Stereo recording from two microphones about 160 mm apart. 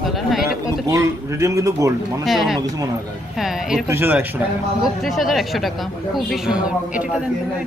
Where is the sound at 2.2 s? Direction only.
Centre (ahead or behind).